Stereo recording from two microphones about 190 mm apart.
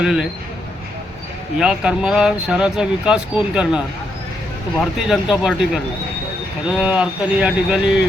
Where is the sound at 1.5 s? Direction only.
5° right (ahead or behind).